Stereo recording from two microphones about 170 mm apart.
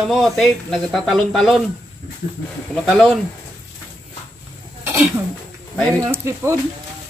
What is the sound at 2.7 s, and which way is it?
Speech, centre (ahead or behind).